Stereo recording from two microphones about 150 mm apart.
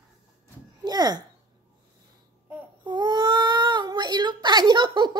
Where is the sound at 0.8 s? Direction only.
25° right (ahead or behind).